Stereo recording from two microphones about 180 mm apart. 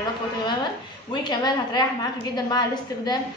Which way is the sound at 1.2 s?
25° left (ahead or behind).